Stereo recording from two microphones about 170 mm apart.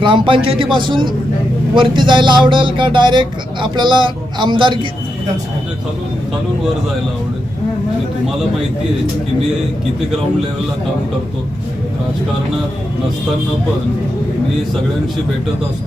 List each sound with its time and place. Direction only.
0.0 s speech: 30° right (ahead or behind)